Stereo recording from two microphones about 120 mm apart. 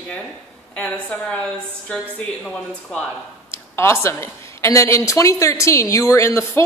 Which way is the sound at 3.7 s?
20° left (ahead or behind).